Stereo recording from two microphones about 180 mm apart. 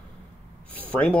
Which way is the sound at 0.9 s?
5° left (ahead or behind).